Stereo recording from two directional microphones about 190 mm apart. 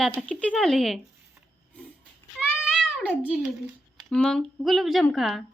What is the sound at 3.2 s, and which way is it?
Speech, 5° right (ahead or behind).